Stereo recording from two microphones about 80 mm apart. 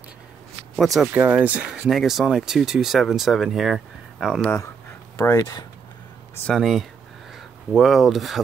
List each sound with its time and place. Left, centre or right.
0.7 s speech: centre
1.1 s speech: right
1.9 s speech: centre
5.1 s speech: left
5.4 s speech: left
6.5 s speech: centre